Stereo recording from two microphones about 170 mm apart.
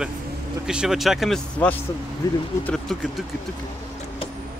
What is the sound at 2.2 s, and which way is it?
Speech, 20° left (ahead or behind).